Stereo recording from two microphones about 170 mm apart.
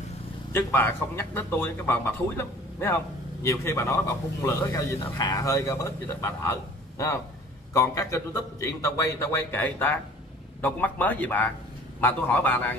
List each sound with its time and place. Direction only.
0.5 s speech: 10° left (ahead or behind)
7.7 s speech: 15° left (ahead or behind)